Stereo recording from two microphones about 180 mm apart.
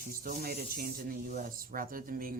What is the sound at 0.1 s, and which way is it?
Speech, 50° right (ahead or behind).